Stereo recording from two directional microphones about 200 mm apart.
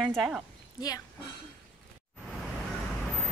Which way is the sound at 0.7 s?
20° left (ahead or behind).